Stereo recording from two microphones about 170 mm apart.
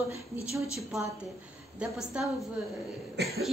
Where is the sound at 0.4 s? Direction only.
Centre (ahead or behind).